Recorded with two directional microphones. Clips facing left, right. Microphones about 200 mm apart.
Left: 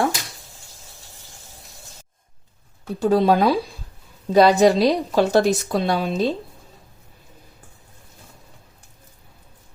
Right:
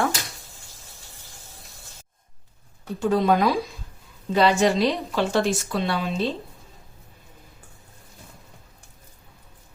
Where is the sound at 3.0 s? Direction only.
35° left (ahead or behind).